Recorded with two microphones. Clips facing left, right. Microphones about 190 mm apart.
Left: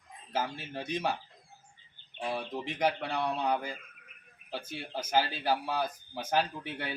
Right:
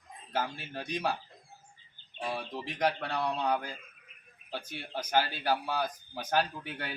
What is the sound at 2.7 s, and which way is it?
Speech, 5° left (ahead or behind).